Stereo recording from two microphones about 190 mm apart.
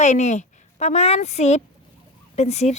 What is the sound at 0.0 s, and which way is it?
A woman's voice, 35° left (ahead or behind).